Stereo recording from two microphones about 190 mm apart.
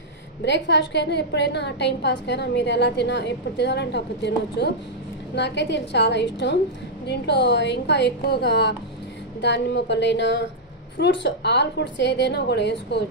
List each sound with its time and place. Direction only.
0.5 s a woman's voice: 65° left (ahead or behind)